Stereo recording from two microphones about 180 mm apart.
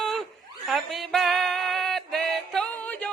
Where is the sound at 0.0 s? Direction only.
Centre (ahead or behind).